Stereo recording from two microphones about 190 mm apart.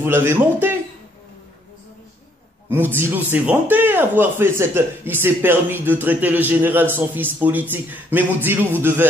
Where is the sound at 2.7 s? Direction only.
10° right (ahead or behind).